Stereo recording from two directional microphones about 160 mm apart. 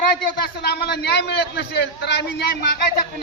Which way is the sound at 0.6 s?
90° left.